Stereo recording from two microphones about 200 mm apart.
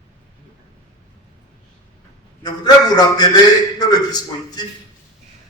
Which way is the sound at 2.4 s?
20° left (ahead or behind).